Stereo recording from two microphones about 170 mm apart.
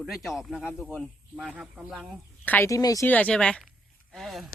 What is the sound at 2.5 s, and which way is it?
Speech, 15° left (ahead or behind).